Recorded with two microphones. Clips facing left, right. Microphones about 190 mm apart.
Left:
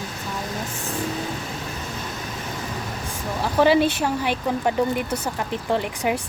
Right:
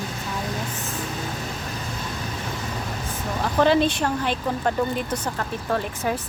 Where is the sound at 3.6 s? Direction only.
10° left (ahead or behind).